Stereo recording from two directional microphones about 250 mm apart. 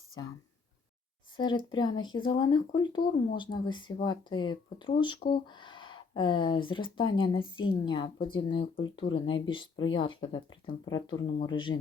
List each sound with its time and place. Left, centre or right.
1.4 s speech: centre